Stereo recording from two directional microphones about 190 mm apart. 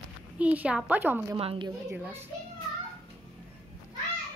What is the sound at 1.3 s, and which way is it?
Speech, 25° right (ahead or behind).